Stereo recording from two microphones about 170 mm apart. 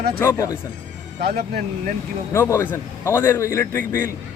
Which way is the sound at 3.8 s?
50° right (ahead or behind).